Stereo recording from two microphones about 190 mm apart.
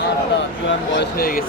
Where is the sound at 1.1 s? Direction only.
50° left (ahead or behind).